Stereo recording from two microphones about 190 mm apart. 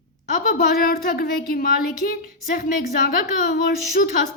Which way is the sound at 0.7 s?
55° left (ahead or behind).